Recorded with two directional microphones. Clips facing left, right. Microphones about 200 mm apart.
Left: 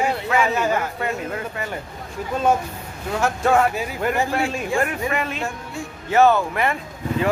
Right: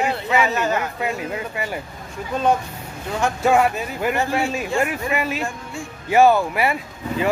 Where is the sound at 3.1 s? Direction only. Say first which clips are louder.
Right 1 dB; 5° left (ahead or behind).